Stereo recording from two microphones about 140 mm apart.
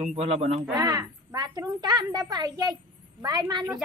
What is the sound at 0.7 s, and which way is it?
A woman's voice, 25° right (ahead or behind).